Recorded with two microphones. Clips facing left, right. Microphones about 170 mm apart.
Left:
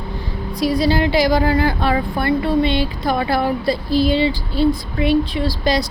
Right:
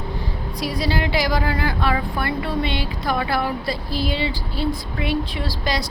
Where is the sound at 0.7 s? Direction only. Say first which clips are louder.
Left 6 dB; 30° left (ahead or behind).